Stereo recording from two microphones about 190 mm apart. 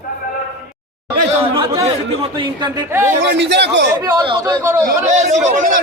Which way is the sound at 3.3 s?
65° right (ahead or behind).